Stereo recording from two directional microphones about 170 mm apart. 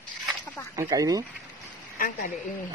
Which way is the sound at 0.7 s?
20° right (ahead or behind).